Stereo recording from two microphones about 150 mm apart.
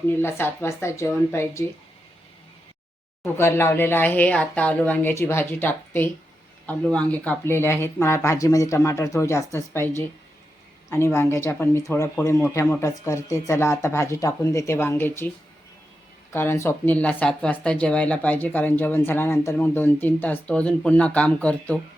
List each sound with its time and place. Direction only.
0.2 s speech: 15° left (ahead or behind)
3.3 s speech: 15° left (ahead or behind)
16.3 s speech: 15° left (ahead or behind)